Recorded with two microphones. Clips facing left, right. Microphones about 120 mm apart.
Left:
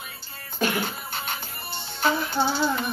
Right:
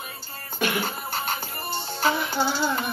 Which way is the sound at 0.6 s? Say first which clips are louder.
Left 1 dB; 35° left (ahead or behind).